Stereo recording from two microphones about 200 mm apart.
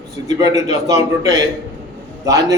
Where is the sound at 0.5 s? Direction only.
15° right (ahead or behind).